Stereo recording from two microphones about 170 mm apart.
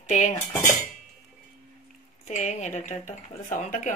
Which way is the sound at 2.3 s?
45° left (ahead or behind).